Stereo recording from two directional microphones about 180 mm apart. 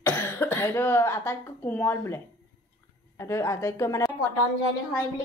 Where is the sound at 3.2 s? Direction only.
15° left (ahead or behind).